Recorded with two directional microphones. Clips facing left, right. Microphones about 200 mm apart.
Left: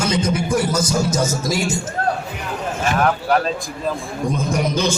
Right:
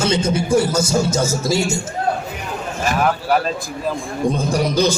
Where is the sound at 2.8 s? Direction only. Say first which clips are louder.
Even; 5° right (ahead or behind).